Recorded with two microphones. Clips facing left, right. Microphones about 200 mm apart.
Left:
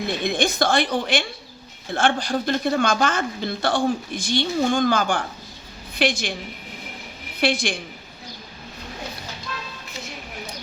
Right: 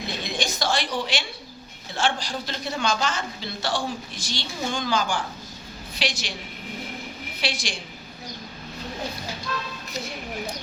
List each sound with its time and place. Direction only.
0.2 s speech: 55° left (ahead or behind)
7.4 s speech: 55° left (ahead or behind)